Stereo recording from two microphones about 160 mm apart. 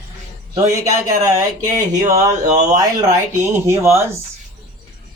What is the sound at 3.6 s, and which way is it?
Speech, 15° right (ahead or behind).